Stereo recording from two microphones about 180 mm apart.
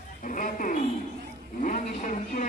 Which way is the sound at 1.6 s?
45° left (ahead or behind).